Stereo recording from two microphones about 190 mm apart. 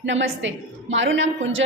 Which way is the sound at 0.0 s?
75° right (ahead or behind).